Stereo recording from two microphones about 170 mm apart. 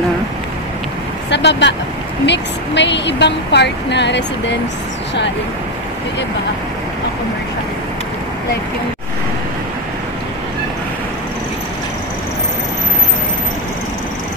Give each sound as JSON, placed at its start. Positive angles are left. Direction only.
{"t": 1.3, "sound": "speech", "side_deg": 90}